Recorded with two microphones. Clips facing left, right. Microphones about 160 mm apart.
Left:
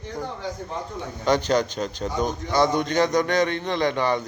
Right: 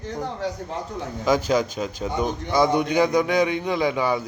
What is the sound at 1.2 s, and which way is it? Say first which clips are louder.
A man's voice: even; 5° right (ahead or behind).